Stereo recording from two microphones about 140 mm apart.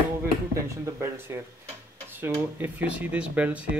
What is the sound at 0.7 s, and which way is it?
Speech, 20° right (ahead or behind).